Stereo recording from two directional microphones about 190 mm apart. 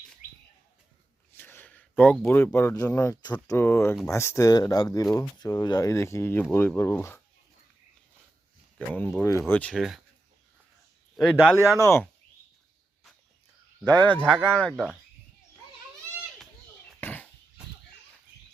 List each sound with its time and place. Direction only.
1.3 s speech: 10° left (ahead or behind)
9.0 s speech: 10° left (ahead or behind)
11.2 s speech: centre (ahead or behind)
11.8 s speech: 15° left (ahead or behind)
13.8 s speech: 10° left (ahead or behind)
17.0 s a sound: 10° left (ahead or behind)